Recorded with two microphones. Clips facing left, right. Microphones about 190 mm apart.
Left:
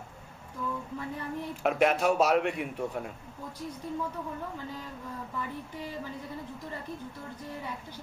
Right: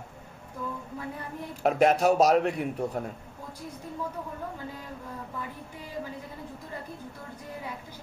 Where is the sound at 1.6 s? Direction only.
40° right (ahead or behind).